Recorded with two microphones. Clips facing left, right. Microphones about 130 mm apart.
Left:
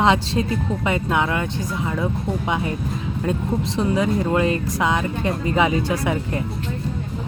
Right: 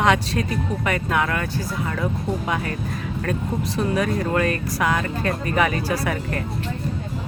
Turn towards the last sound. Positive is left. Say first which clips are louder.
# left 2 dB
turn(degrees=20)  # may be behind; listen again after turning